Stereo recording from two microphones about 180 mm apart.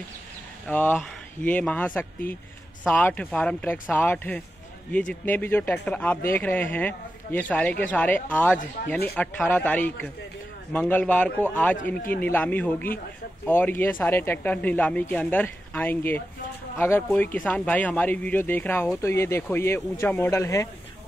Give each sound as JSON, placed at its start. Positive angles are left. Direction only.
{"t": 0.7, "sound": "speech", "side_deg": 10}
{"t": 2.3, "sound": "speech", "side_deg": 50}
{"t": 2.9, "sound": "speech", "side_deg": 10}